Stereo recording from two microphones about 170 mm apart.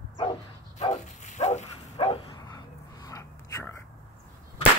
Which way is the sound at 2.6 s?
20° left (ahead or behind).